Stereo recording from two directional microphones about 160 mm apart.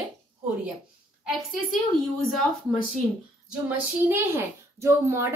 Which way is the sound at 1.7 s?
5° left (ahead or behind).